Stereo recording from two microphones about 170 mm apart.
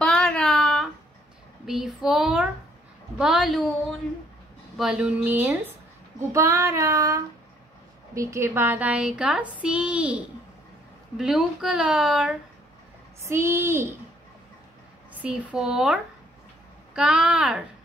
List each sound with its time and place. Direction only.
0.0 s a sound: 5° left (ahead or behind)
1.7 s speech: centre (ahead or behind)
13.2 s speech: 15° right (ahead or behind)
15.2 s speech: 5° right (ahead or behind)